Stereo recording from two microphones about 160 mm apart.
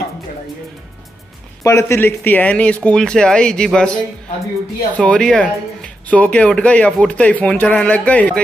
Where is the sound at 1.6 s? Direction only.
15° left (ahead or behind).